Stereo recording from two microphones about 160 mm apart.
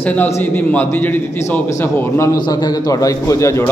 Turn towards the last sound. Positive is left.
turn(degrees=15)  # may be behind; listen again after turning